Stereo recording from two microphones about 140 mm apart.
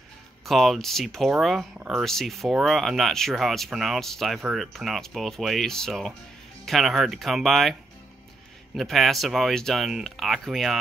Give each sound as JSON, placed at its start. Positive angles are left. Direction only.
{"t": 0.5, "sound": "speech", "side_deg": 0}
{"t": 8.7, "sound": "speech", "side_deg": 0}